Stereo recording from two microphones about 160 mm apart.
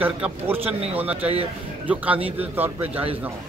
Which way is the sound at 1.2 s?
40° right (ahead or behind).